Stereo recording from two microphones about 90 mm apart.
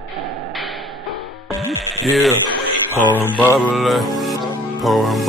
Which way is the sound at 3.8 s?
Centre (ahead or behind).